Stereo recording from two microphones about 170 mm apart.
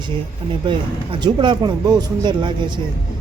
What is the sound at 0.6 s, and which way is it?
Speech, 30° right (ahead or behind).